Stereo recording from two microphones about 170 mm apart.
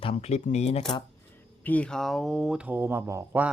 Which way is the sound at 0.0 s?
40° left (ahead or behind).